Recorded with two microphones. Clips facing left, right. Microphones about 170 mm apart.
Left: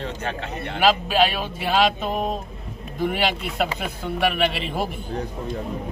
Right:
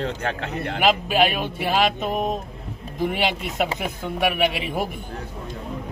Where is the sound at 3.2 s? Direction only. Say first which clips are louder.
Even; 20° right (ahead or behind).